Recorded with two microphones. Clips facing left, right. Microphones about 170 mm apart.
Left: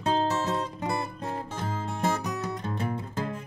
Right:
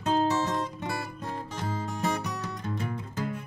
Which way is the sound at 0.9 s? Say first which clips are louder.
Left 3 dB; 30° left (ahead or behind).